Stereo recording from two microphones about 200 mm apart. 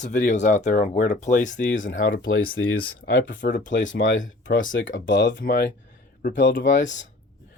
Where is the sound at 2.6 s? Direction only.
75° left (ahead or behind).